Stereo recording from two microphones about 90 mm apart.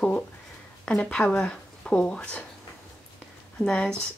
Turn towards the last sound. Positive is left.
turn(degrees=10)  # may be behind; listen again after turning